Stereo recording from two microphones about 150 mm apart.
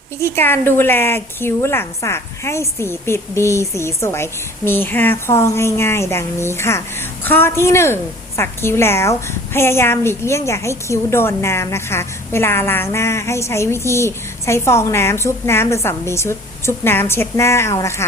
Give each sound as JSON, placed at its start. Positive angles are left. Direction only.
{"t": 0.2, "sound": "a woman's voice", "side_deg": 15}